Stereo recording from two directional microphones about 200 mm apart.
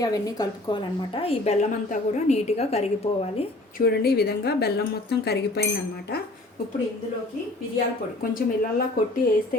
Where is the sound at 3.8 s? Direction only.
50° left (ahead or behind).